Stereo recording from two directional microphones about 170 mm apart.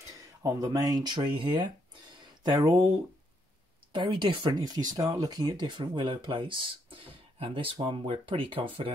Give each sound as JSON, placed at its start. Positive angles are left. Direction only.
{"t": 0.1, "sound": "speech", "side_deg": -20}
{"t": 3.9, "sound": "speech", "side_deg": -30}